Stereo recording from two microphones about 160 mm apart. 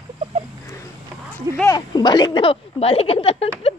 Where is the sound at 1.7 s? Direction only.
25° left (ahead or behind).